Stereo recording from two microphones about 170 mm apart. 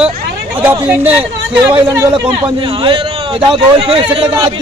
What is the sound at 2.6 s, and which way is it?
A man's voice, 30° right (ahead or behind).